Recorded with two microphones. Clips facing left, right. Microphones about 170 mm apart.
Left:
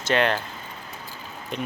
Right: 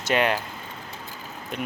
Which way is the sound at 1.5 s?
5° right (ahead or behind).